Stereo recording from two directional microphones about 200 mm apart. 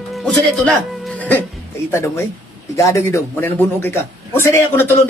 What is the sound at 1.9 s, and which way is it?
A man's voice, 10° left (ahead or behind).